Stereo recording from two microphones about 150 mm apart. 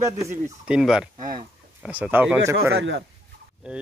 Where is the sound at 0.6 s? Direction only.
5° right (ahead or behind).